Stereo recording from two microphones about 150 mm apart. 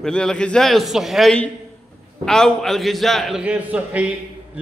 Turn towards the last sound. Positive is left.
turn(degrees=-10)  # may be behind; listen again after turning